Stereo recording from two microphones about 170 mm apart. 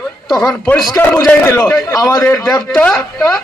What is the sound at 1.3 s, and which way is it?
A man's voice, 20° left (ahead or behind).